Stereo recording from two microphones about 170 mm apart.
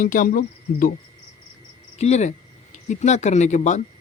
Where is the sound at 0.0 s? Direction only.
50° left (ahead or behind).